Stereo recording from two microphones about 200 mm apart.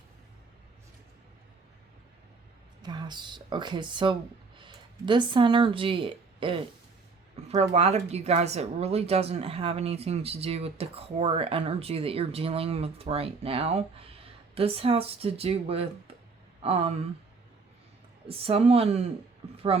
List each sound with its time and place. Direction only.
2.8 s speech: 20° right (ahead or behind)
7.7 s speech: 30° right (ahead or behind)
18.3 s speech: 30° right (ahead or behind)